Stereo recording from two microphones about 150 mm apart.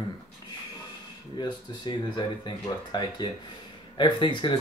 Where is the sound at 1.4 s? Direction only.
30° left (ahead or behind).